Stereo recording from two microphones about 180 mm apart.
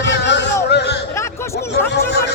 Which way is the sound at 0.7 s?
70° left (ahead or behind).